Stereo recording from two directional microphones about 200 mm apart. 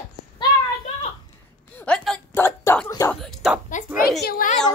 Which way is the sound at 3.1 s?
Centre (ahead or behind).